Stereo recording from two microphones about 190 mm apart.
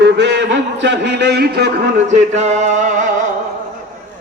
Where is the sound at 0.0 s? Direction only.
65° right (ahead or behind).